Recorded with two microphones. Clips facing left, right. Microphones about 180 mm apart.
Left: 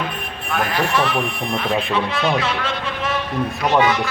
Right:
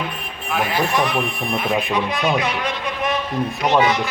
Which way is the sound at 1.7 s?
15° right (ahead or behind).